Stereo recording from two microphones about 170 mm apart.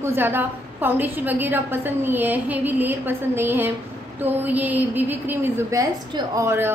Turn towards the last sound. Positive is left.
turn(degrees=-15)  # may be behind; listen again after turning